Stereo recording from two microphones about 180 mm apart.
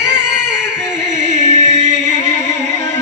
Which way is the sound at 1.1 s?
40° right (ahead or behind).